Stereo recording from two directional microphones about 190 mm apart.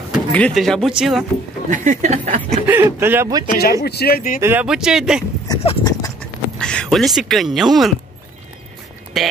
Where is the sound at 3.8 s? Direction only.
55° left (ahead or behind).